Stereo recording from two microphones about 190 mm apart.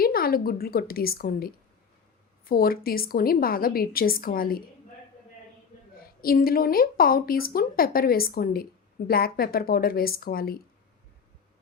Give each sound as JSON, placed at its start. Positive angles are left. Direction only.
{"t": 0.0, "sound": "a woman's voice", "side_deg": 50}
{"t": 6.2, "sound": "speech", "side_deg": 50}